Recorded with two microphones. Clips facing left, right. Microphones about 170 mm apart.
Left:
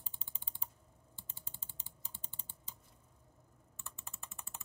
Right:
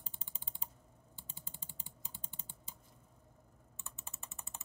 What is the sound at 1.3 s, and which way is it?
Typing, 15° right (ahead or behind).